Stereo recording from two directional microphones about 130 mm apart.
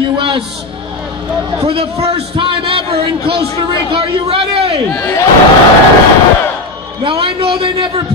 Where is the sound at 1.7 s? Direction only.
50° right (ahead or behind).